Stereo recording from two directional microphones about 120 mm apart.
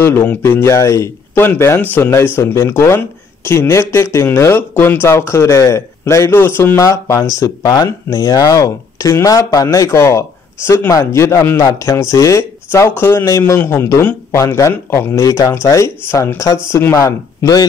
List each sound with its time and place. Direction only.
0.0 s speech: 15° left (ahead or behind)